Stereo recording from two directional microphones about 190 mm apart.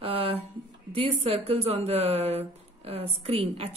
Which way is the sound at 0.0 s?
30° right (ahead or behind).